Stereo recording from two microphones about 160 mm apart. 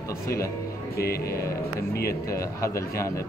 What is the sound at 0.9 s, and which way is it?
Music, 75° left (ahead or behind).